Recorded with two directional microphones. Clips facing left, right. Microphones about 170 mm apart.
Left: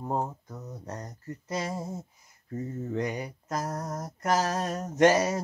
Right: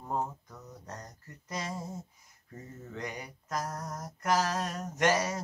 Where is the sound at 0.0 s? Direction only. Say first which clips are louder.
Left 4 dB; 35° left (ahead or behind).